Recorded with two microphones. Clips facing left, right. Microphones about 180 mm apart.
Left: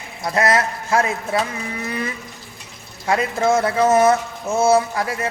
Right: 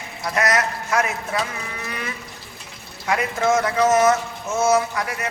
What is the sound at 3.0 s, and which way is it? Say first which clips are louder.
Speech: left 2 dB; 30° left (ahead or behind).